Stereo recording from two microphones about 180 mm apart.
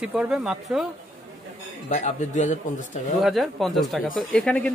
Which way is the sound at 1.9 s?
40° left (ahead or behind).